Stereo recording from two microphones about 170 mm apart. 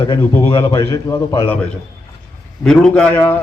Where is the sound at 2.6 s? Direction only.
5° left (ahead or behind).